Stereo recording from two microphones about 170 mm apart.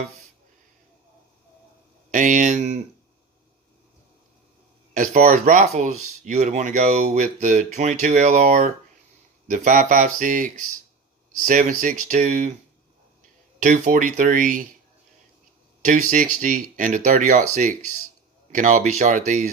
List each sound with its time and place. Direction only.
2.0 s speech: 50° right (ahead or behind)
4.9 s speech: 50° right (ahead or behind)
13.6 s speech: 50° right (ahead or behind)
15.8 s speech: 50° right (ahead or behind)